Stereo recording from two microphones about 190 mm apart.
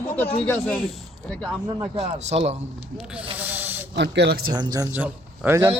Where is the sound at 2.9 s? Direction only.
5° right (ahead or behind).